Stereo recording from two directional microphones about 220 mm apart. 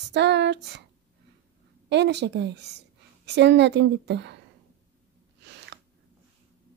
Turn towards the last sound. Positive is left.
turn(degrees=-50)  # may be behind; listen again after turning